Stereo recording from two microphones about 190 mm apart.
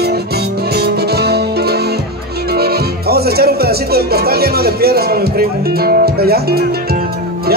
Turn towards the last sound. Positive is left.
turn(degrees=-55)  # may be behind; listen again after turning